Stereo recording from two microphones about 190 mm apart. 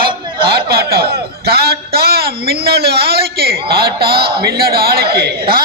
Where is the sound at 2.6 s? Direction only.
55° right (ahead or behind).